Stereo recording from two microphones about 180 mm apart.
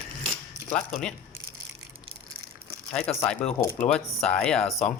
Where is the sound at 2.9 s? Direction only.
5° left (ahead or behind).